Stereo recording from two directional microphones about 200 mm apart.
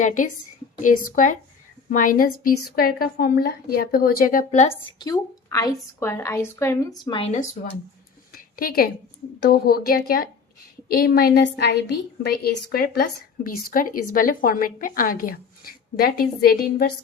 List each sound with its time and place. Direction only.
0.0 s a woman's voice: 40° left (ahead or behind)
4.7 s a woman's voice: 15° left (ahead or behind); by 7.7 s 40° left (ahead or behind)
8.3 s a sound: 45° left (ahead or behind)
9.4 s a woman's voice: 50° left (ahead or behind)